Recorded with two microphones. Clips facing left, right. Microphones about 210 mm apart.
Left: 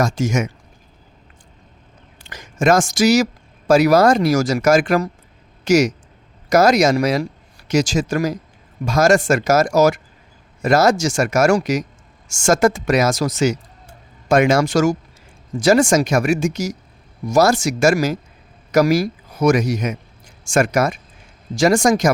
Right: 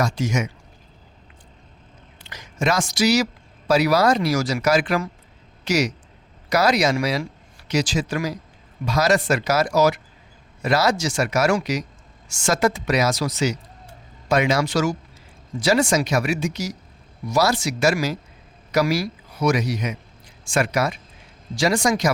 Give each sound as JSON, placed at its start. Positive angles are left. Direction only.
{"t": 0.0, "sound": "speech", "side_deg": 45}
{"t": 2.2, "sound": "a man's voice", "side_deg": 50}